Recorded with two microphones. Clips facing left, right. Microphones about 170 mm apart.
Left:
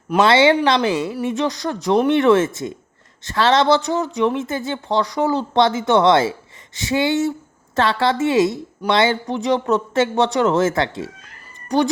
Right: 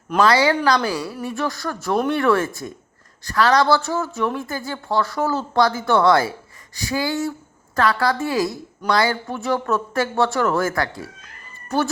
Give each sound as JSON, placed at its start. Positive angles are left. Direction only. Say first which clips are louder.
{"t": 0.3, "sound": "a woman's voice", "louder": "left 4 dB", "side_deg": 25}